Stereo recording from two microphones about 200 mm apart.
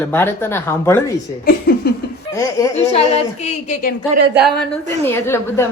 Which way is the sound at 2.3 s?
15° left (ahead or behind).